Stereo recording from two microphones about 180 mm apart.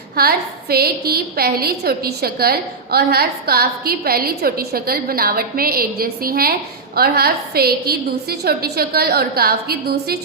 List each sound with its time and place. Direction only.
0.2 s a woman's voice: 60° right (ahead or behind)